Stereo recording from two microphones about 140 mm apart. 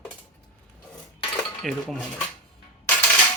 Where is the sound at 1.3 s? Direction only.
5° left (ahead or behind).